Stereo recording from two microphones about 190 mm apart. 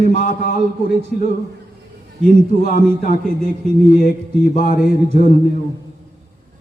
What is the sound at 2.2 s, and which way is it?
Speech, 45° left (ahead or behind).